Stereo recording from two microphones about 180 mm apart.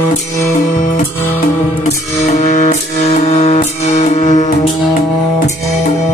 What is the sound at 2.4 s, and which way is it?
Music, 40° left (ahead or behind).